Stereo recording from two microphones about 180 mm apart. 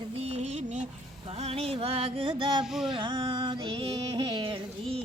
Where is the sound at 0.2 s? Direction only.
40° right (ahead or behind).